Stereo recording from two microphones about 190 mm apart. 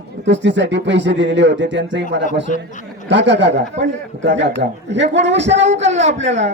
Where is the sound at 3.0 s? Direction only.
70° right (ahead or behind).